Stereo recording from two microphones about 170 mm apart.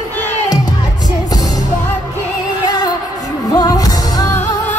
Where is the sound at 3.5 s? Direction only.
20° left (ahead or behind).